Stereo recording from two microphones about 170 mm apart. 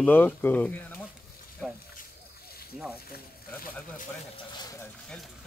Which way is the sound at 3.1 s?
60° left (ahead or behind).